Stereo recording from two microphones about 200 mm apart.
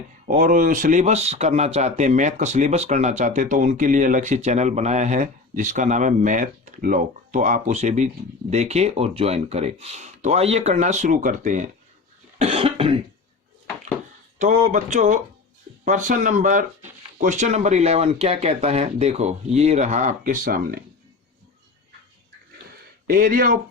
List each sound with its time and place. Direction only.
0.3 s speech: 40° right (ahead or behind)
12.4 s cough: 30° right (ahead or behind)
14.3 s speech: 35° right (ahead or behind)
23.0 s speech: 45° right (ahead or behind)